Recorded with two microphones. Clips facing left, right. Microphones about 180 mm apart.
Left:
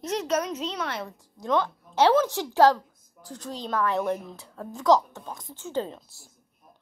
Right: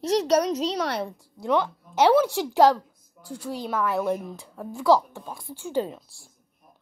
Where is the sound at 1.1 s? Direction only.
15° right (ahead or behind).